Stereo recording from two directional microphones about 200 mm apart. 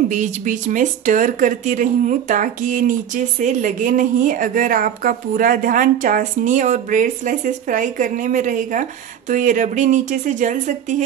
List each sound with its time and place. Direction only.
0.1 s speech: 40° right (ahead or behind)